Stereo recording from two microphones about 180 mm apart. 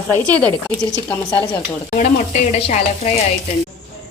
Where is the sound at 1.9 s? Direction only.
40° left (ahead or behind).